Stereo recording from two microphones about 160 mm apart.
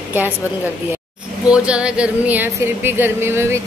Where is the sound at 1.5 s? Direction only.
5° right (ahead or behind).